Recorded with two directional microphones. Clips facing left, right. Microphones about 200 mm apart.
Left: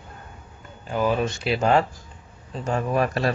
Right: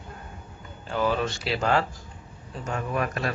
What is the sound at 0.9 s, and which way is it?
A man's voice, 15° left (ahead or behind).